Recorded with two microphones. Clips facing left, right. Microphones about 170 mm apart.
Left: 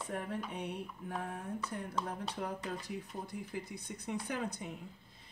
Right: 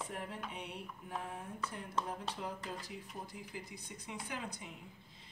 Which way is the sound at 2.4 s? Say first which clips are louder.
Left 4 dB; 50° left (ahead or behind).